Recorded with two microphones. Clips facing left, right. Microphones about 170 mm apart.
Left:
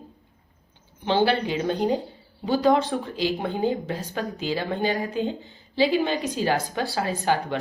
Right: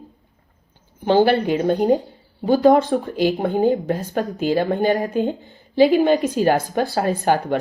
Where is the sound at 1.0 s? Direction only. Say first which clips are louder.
Right 6 dB; 45° right (ahead or behind).